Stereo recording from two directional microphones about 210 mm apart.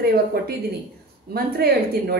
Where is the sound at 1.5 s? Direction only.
50° right (ahead or behind).